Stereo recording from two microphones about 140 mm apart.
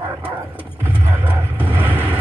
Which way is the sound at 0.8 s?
15° right (ahead or behind).